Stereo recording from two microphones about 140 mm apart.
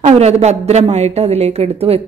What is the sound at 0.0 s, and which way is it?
Speech, 50° right (ahead or behind).